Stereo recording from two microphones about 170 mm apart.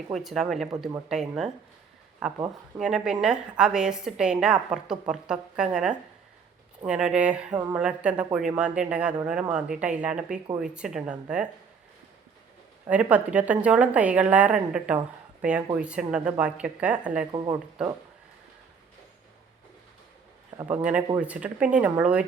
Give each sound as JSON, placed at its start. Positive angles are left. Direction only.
{"t": 0.1, "sound": "a woman's voice", "side_deg": 0}
{"t": 12.9, "sound": "a woman's voice", "side_deg": -10}
{"t": 17.3, "sound": "speech", "side_deg": -25}
{"t": 20.7, "sound": "a woman's voice", "side_deg": -5}